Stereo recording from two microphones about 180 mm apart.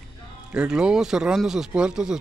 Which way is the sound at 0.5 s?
5° right (ahead or behind).